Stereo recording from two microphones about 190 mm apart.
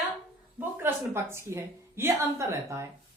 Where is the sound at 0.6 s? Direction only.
10° right (ahead or behind).